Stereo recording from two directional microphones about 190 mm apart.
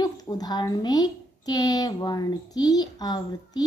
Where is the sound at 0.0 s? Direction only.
20° left (ahead or behind).